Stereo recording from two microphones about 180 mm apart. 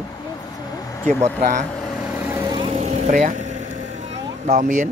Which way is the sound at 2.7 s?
40° right (ahead or behind).